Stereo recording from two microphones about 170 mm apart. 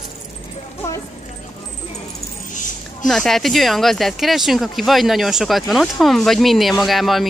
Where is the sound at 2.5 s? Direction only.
50° left (ahead or behind).